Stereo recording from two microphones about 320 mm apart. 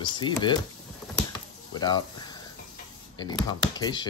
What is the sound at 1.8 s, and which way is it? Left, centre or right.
Speech, centre.